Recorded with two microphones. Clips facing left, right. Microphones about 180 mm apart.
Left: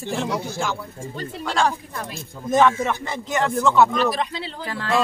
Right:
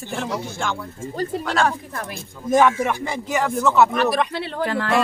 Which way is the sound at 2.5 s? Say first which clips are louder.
Right 1 dB; 10° right (ahead or behind).